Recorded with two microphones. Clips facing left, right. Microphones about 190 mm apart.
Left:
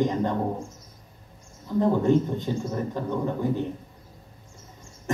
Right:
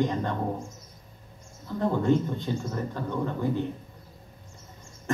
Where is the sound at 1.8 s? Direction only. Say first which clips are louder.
Left 3 dB; 15° left (ahead or behind).